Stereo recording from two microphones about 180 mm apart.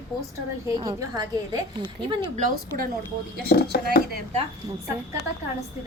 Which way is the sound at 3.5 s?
60° left (ahead or behind).